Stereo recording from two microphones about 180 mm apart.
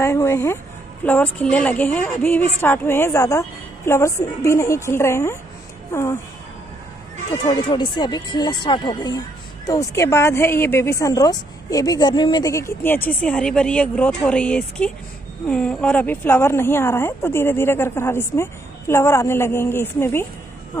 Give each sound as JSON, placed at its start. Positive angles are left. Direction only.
{"t": 0.0, "sound": "a woman's voice", "side_deg": 15}
{"t": 7.4, "sound": "a woman's voice", "side_deg": 25}